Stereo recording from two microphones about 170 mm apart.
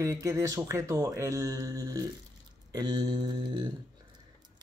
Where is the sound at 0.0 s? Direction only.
20° right (ahead or behind).